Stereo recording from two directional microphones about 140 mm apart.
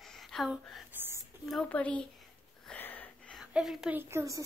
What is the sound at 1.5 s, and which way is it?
Speech, 5° left (ahead or behind).